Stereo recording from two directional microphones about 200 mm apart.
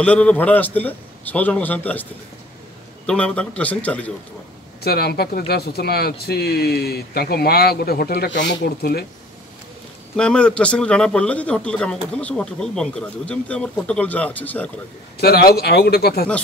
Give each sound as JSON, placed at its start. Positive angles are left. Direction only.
{"t": 0.0, "sound": "speech", "side_deg": 5}
{"t": 3.1, "sound": "speech", "side_deg": 5}
{"t": 4.8, "sound": "speech", "side_deg": 50}
{"t": 10.1, "sound": "speech", "side_deg": 5}
{"t": 15.1, "sound": "speech", "side_deg": 50}